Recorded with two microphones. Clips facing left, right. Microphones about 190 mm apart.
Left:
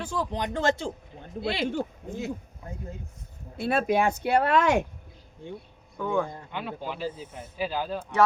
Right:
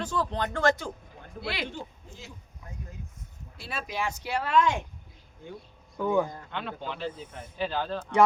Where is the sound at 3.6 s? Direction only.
55° left (ahead or behind); by 4.9 s 70° left (ahead or behind).